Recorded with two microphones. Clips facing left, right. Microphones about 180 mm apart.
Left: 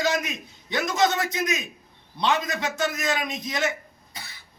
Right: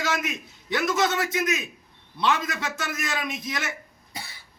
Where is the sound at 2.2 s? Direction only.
20° left (ahead or behind).